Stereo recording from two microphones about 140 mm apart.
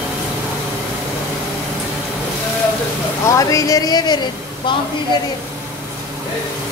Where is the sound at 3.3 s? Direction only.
25° left (ahead or behind).